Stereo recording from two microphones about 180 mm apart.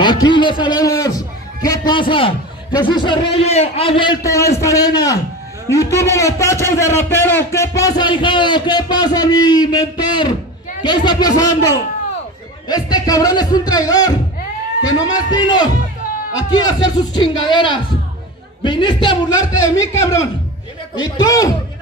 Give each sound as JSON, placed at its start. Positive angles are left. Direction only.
{"t": 0.0, "sound": "a man's voice", "side_deg": 25}
{"t": 20.9, "sound": "a man's voice", "side_deg": 20}